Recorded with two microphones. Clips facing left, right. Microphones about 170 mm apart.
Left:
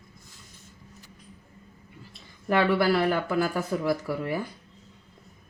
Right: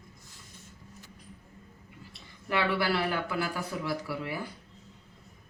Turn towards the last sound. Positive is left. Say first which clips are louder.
# left 6 dB
turn(degrees=45)  # may be behind; listen again after turning